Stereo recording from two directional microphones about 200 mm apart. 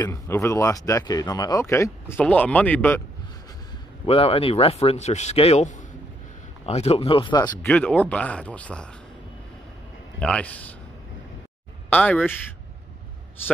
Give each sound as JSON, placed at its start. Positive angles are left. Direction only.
{"t": 0.0, "sound": "speech", "side_deg": 15}
{"t": 4.0, "sound": "speech", "side_deg": 30}
{"t": 7.6, "sound": "speech", "side_deg": 5}
{"t": 10.1, "sound": "speech", "side_deg": 5}
{"t": 11.9, "sound": "speech", "side_deg": 10}